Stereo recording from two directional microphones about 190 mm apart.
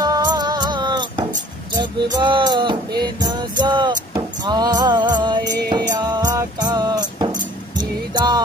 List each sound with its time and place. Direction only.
0.0 s music: 20° right (ahead or behind)